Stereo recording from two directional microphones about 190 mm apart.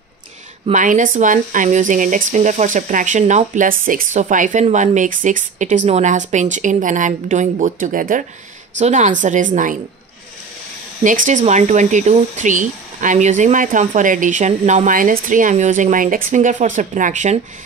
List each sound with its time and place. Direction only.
0.7 s speech: 40° right (ahead or behind)
11.1 s speech: 40° right (ahead or behind)